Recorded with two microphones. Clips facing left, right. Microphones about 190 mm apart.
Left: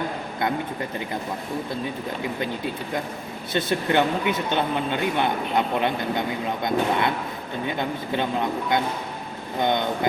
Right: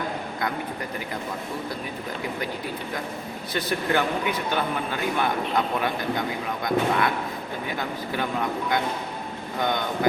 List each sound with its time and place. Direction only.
3.5 s a man's voice: 25° left (ahead or behind)